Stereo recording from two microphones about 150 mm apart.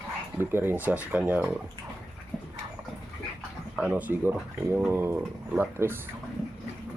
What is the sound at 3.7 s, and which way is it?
Speech, 10° right (ahead or behind).